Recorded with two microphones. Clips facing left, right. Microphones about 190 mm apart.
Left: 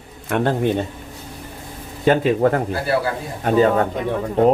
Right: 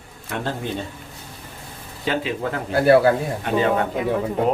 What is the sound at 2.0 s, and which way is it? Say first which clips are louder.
Speech: left 9 dB; 50° left (ahead or behind).